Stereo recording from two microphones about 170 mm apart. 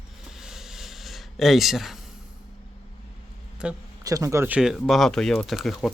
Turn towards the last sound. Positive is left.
turn(degrees=0)  # may be behind; listen again after turning